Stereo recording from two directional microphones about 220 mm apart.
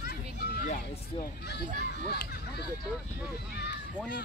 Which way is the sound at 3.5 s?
50° left (ahead or behind).